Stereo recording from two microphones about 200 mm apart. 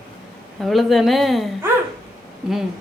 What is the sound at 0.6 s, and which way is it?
Speech, centre (ahead or behind).